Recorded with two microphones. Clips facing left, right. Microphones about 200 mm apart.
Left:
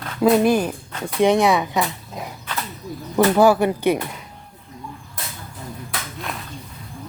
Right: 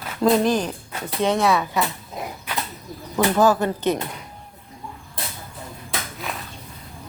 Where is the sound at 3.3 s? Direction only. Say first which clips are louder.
Left 2 dB; 10° left (ahead or behind).